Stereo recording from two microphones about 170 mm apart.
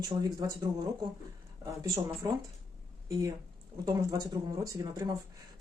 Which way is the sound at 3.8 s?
20° right (ahead or behind).